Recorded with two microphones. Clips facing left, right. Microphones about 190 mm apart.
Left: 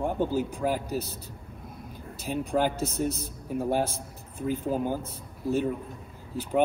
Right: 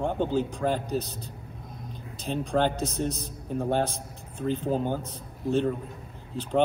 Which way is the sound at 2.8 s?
15° right (ahead or behind).